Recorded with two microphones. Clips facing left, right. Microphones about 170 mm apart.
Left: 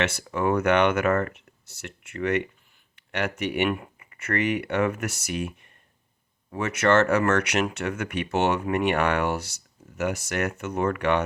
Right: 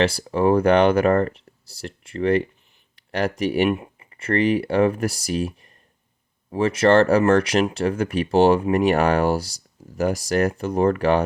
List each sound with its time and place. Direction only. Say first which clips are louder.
0.0 s speech: right 6 dB; 35° right (ahead or behind)